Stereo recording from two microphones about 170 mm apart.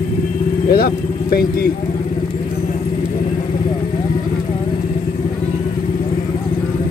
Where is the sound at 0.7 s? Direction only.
60° left (ahead or behind).